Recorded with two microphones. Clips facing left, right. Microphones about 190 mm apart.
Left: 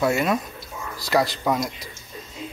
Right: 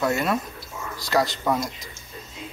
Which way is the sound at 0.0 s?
15° left (ahead or behind).